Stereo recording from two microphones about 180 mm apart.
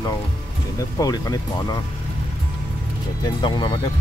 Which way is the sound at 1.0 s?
20° left (ahead or behind).